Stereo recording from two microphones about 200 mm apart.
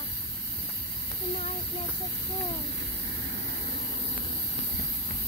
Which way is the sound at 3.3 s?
60° right (ahead or behind).